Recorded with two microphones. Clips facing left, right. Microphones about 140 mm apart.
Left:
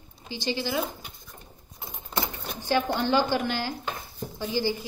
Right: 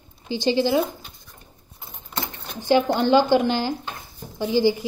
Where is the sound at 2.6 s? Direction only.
20° right (ahead or behind).